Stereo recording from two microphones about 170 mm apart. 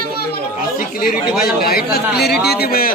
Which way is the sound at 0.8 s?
60° left (ahead or behind).